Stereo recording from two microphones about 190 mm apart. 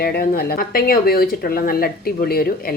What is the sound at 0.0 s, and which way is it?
Speech, 55° left (ahead or behind).